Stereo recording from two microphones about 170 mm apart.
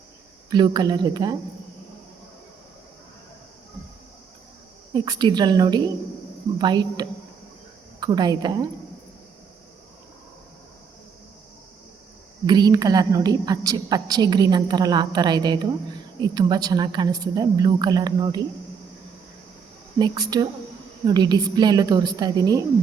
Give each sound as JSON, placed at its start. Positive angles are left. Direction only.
{"t": 0.5, "sound": "a woman's voice", "side_deg": -25}
{"t": 4.9, "sound": "a woman's voice", "side_deg": -25}
{"t": 12.5, "sound": "a woman's voice", "side_deg": -25}
{"t": 20.0, "sound": "a woman's voice", "side_deg": -25}